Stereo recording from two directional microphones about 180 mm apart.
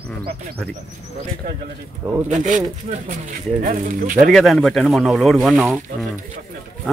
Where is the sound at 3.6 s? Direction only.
50° right (ahead or behind).